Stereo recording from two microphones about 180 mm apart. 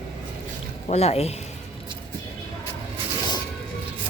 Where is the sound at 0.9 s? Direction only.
35° left (ahead or behind).